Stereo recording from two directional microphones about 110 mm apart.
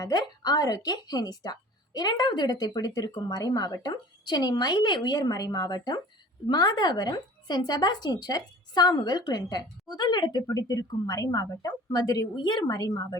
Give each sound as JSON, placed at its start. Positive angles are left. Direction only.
{"t": 0.0, "sound": "speech", "side_deg": 40}